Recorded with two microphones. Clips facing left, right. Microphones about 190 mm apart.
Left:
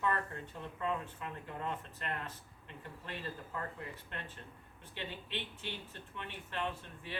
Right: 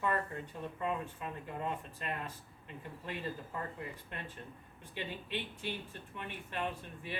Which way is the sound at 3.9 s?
10° right (ahead or behind).